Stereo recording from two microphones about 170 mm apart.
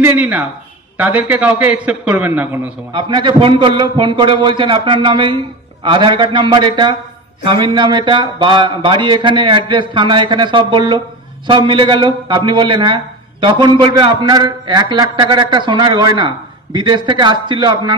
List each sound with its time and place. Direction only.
0.0 s a man's voice: 10° right (ahead or behind)
2.9 s a man's voice: 30° right (ahead or behind)